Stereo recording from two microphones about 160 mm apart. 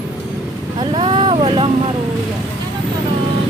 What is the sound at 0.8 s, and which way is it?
Speech, 30° right (ahead or behind).